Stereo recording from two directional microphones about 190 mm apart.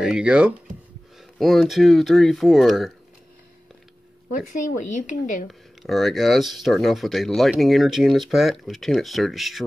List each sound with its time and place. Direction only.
0.0 s speech: 5° right (ahead or behind)
4.3 s speech: 45° left (ahead or behind)
5.5 s speech: centre (ahead or behind)